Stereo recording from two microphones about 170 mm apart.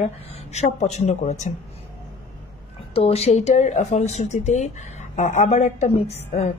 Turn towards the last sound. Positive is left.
turn(degrees=40)  # may be behind; listen again after turning